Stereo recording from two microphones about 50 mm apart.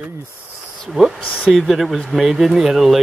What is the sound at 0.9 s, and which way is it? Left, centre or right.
Speech, centre.